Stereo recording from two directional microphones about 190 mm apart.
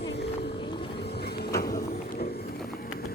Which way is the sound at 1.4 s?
55° left (ahead or behind).